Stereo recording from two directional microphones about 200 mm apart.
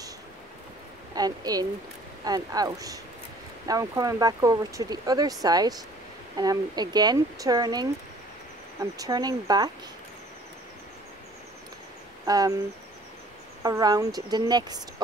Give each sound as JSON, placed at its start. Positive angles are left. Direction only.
{"t": 1.1, "sound": "speech", "side_deg": -20}
{"t": 8.9, "sound": "speech", "side_deg": -20}
{"t": 12.3, "sound": "speech", "side_deg": -20}
{"t": 13.6, "sound": "speech", "side_deg": -20}